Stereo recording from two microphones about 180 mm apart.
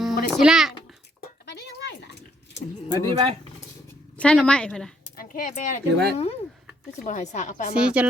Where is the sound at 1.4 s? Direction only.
70° left (ahead or behind).